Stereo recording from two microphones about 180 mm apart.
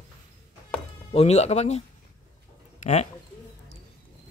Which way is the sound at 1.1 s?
35° left (ahead or behind).